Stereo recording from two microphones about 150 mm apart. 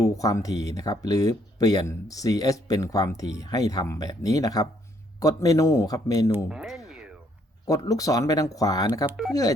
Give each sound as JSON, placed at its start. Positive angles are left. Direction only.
{"t": 0.0, "sound": "speech", "side_deg": 25}
{"t": 6.5, "sound": "music", "side_deg": -5}
{"t": 7.6, "sound": "speech", "side_deg": 25}
{"t": 9.0, "sound": "speech", "side_deg": -5}